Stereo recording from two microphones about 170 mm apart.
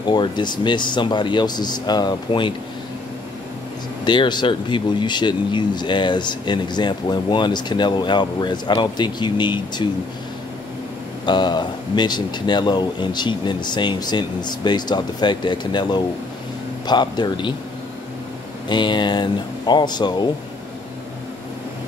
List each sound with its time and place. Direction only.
0.0 s speech: 25° left (ahead or behind)
4.0 s speech: 30° left (ahead or behind)
11.2 s speech: 25° left (ahead or behind)
18.7 s speech: 25° left (ahead or behind)